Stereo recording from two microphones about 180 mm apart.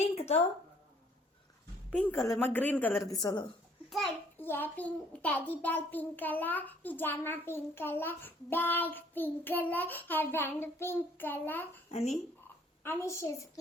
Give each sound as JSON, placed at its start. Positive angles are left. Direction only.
{"t": 1.9, "sound": "a child's voice", "side_deg": 5}
{"t": 3.8, "sound": "a child's voice", "side_deg": 0}
{"t": 4.4, "sound": "a child's voice", "side_deg": 10}
{"t": 11.9, "sound": "speech", "side_deg": 35}
{"t": 12.8, "sound": "a child's voice", "side_deg": 15}